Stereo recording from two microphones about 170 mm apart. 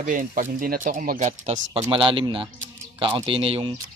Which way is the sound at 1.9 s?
30° right (ahead or behind).